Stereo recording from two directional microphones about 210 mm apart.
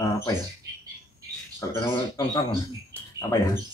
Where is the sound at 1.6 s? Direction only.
15° left (ahead or behind).